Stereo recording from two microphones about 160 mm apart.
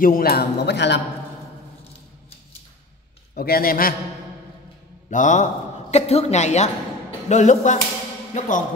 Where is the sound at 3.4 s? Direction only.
65° left (ahead or behind).